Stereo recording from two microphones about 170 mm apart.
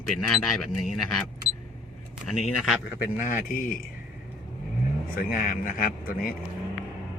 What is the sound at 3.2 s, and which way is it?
Speech, 50° left (ahead or behind).